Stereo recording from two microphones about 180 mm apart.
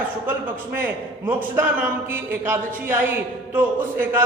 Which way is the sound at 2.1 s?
10° right (ahead or behind).